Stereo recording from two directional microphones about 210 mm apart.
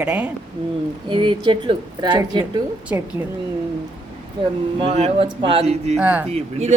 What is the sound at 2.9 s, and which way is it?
Speech, 10° right (ahead or behind).